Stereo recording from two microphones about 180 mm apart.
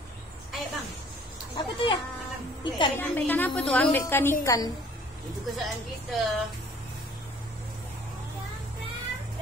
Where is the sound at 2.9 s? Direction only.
10° left (ahead or behind).